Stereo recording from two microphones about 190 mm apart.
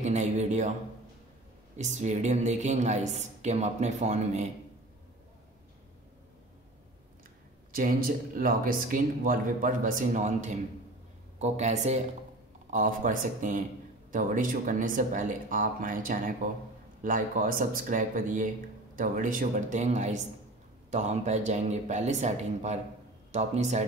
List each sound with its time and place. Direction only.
0.0 s a man's voice: 35° right (ahead or behind)
1.8 s speech: 40° right (ahead or behind)
7.7 s speech: 50° right (ahead or behind)